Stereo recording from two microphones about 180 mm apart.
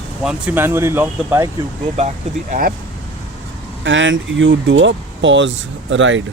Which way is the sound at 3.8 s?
90° right.